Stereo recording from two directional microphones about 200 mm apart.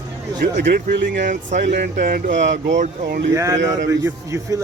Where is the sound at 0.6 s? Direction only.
55° right (ahead or behind).